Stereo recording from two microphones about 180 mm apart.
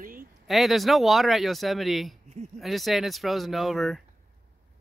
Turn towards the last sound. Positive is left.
turn(degrees=0)  # may be behind; listen again after turning